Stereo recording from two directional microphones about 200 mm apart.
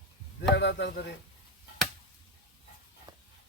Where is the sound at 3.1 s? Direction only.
20° right (ahead or behind).